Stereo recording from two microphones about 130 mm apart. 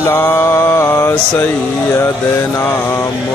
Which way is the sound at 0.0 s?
20° left (ahead or behind).